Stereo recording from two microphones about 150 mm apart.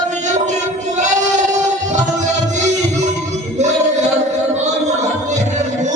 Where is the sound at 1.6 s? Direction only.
55° right (ahead or behind).